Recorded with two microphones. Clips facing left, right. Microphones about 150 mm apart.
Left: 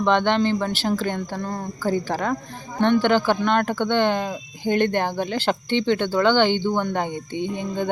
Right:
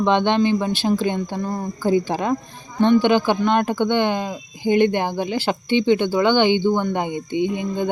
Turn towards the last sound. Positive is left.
turn(degrees=-10)  # may be behind; listen again after turning